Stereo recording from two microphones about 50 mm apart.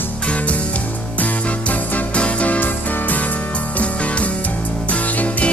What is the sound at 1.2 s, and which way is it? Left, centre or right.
Music, left.